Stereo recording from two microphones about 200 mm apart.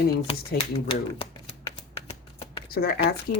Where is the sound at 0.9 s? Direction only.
25° left (ahead or behind).